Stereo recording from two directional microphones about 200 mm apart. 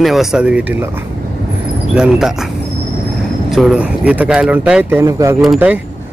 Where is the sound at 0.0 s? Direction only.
Centre (ahead or behind).